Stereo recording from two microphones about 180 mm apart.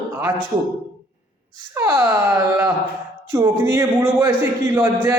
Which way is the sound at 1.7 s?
15° right (ahead or behind).